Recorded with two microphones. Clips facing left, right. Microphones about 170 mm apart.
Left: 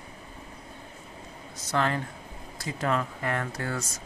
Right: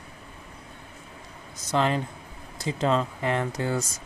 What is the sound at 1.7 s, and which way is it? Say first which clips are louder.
Speech: right 3 dB; 20° right (ahead or behind).